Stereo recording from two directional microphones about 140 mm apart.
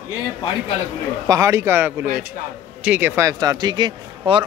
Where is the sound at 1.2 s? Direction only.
25° right (ahead or behind).